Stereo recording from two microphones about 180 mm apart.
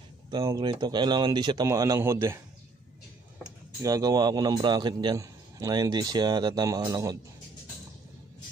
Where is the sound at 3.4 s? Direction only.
20° right (ahead or behind).